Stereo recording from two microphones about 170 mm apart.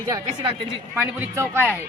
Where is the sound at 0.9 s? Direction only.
10° right (ahead or behind).